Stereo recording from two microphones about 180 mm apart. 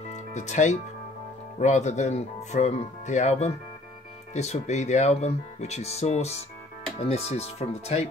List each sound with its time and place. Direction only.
0.1 s music: 40° left (ahead or behind)
1.6 s speech: 40° left (ahead or behind)